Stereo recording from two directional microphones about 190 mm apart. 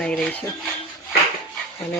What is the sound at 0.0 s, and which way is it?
Dishes, 5° left (ahead or behind).